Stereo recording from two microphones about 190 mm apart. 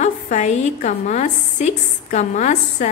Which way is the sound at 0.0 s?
40° left (ahead or behind).